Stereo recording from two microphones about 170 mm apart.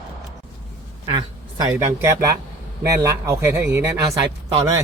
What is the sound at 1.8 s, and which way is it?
A man's voice, 15° right (ahead or behind).